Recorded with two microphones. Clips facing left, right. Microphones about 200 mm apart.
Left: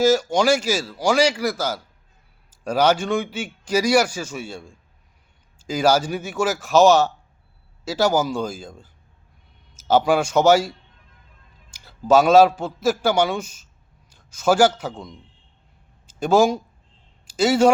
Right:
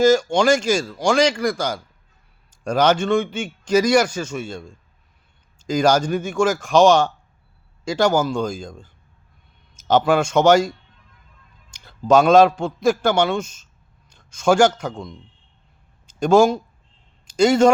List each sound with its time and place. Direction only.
0.0 s a man's voice: 5° left (ahead or behind)